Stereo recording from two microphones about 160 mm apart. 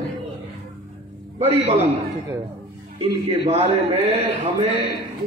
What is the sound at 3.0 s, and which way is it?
A man's voice, 40° right (ahead or behind).